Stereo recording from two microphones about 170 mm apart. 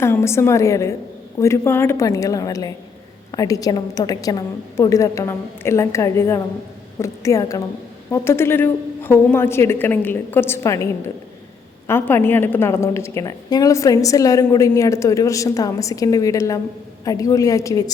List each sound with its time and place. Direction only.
0.0 s a woman's voice: 15° left (ahead or behind)
11.9 s a woman's voice: 15° left (ahead or behind)